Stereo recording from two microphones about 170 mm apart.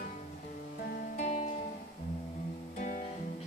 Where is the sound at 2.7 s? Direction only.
50° left (ahead or behind).